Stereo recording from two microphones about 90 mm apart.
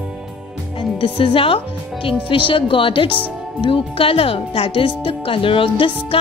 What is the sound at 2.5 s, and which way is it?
Music, 75° left (ahead or behind).